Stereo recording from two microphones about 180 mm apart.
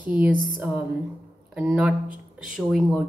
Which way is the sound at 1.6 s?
10° right (ahead or behind).